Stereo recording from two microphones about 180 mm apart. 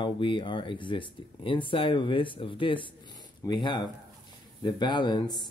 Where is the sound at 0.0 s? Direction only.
25° left (ahead or behind).